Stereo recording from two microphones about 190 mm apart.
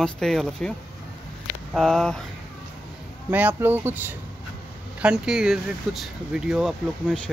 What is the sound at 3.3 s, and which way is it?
Speech, 10° right (ahead or behind).